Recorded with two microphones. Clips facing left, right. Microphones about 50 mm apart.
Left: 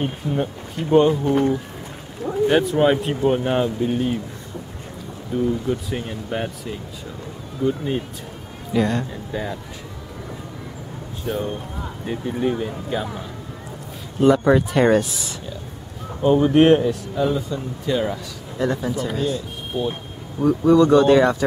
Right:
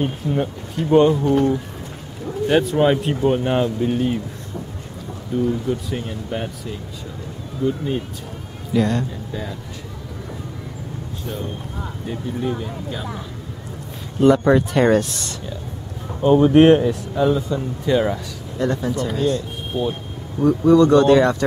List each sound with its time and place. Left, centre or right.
0.3 s speech: centre
5.3 s speech: centre
9.3 s speech: centre
11.2 s speech: centre
12.1 s speech: centre
14.2 s speech: centre
18.6 s speech: centre